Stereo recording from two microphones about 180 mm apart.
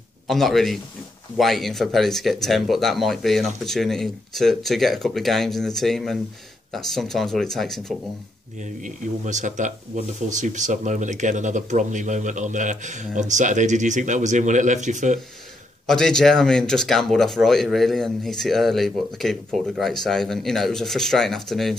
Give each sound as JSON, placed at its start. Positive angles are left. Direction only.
{"t": 0.3, "sound": "speech", "side_deg": 0}
{"t": 8.5, "sound": "speech", "side_deg": -40}
{"t": 15.9, "sound": "speech", "side_deg": 0}